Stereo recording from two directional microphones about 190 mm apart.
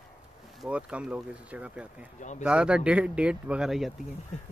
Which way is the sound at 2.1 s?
40° left (ahead or behind).